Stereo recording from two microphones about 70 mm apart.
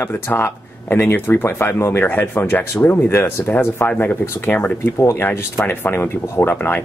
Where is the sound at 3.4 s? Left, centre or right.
Left.